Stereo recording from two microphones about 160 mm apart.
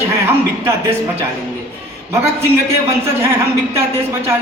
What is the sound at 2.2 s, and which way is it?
A man's voice, 15° right (ahead or behind).